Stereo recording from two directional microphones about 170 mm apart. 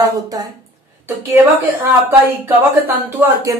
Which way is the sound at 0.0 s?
20° right (ahead or behind).